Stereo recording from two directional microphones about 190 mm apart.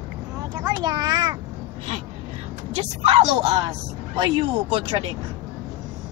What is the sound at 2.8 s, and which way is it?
Speech, 35° right (ahead or behind).